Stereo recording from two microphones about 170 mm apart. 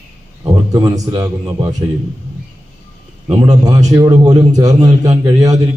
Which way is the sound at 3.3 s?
20° right (ahead or behind).